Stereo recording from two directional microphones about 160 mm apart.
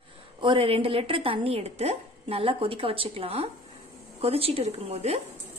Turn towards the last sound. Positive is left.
turn(degrees=-40)  # may be behind; listen again after turning